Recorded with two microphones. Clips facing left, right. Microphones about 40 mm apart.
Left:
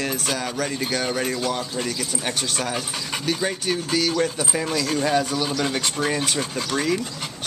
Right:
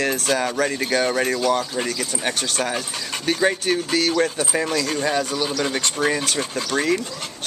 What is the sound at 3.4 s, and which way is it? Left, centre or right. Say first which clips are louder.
Speech: right 5 dB; centre.